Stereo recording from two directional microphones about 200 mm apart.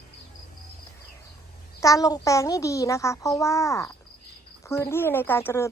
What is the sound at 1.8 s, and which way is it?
Speech, 15° left (ahead or behind).